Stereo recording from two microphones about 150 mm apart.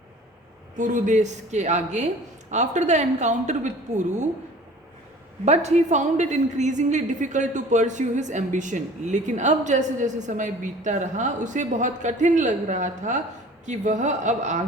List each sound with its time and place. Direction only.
0.8 s a woman's voice: 55° right (ahead or behind)
5.5 s a woman's voice: 50° right (ahead or behind)